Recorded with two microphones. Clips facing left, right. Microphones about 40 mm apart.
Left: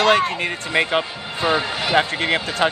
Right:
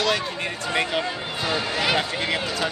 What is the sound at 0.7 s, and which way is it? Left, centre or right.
Speech, left.